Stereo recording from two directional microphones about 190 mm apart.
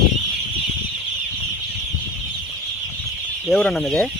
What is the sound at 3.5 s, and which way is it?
Speech, centre (ahead or behind).